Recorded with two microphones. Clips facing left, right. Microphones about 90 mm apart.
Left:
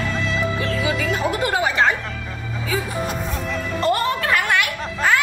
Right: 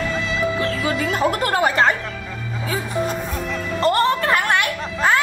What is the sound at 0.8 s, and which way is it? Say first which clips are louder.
Music: even; 40° right (ahead or behind).